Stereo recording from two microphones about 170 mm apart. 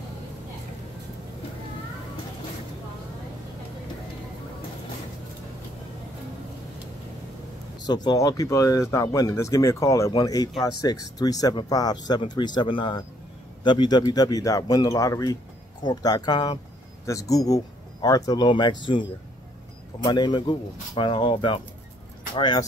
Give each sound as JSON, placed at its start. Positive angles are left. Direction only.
{"t": 7.8, "sound": "speech", "side_deg": 25}
{"t": 20.0, "sound": "speech", "side_deg": 25}